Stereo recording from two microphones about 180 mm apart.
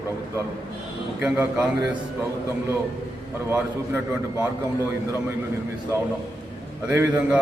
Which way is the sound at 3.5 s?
10° right (ahead or behind).